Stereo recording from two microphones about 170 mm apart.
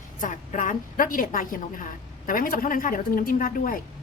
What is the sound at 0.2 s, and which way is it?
A woman's voice, 50° left (ahead or behind).